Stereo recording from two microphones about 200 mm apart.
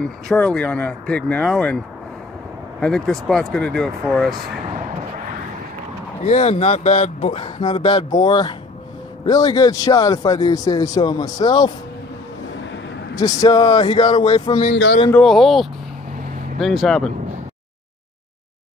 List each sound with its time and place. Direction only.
0.0 s speech: 5° left (ahead or behind)
2.8 s speech: 5° left (ahead or behind)
6.2 s a man's voice: 35° left (ahead or behind); by 11.7 s 20° left (ahead or behind)
13.2 s a man's voice: 20° left (ahead or behind)
14.7 s a man's voice: 60° left (ahead or behind)
15.0 s speech: 5° left (ahead or behind)